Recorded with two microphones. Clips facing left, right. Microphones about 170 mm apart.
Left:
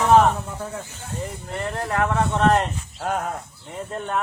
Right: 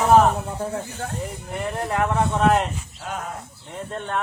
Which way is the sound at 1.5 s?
20° right (ahead or behind).